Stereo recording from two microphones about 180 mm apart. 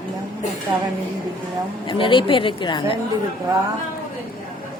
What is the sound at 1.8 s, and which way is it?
A woman's voice, 25° left (ahead or behind).